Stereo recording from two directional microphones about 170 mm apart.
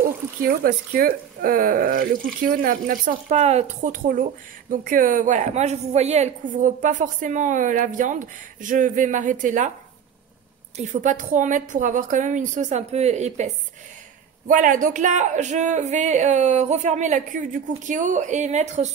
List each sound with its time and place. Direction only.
0.4 s speech: 60° right (ahead or behind)
10.8 s speech: 45° right (ahead or behind)
14.5 s speech: 50° right (ahead or behind)